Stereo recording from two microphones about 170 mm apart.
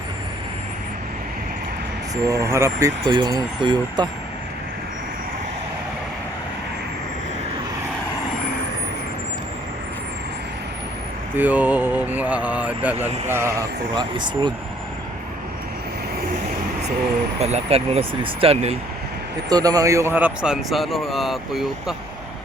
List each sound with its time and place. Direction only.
2.2 s speech: 20° right (ahead or behind)
11.3 s speech: 10° right (ahead or behind)
13.9 s speech: 25° right (ahead or behind)
17.4 s speech: 35° right (ahead or behind)
19.5 s speech: 20° right (ahead or behind); by 21.9 s centre (ahead or behind)